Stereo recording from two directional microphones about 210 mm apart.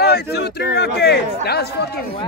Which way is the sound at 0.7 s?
50° left (ahead or behind).